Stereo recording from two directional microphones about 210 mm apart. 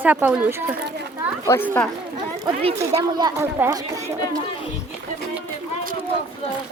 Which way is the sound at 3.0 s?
15° right (ahead or behind).